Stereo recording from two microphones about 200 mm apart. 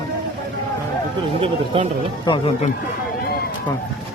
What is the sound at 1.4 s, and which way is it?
Speech, 30° right (ahead or behind).